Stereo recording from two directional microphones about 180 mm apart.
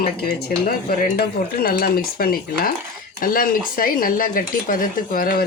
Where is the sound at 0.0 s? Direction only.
60° left (ahead or behind).